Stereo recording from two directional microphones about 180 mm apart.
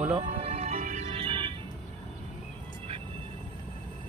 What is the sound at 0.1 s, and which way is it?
Music, 35° right (ahead or behind).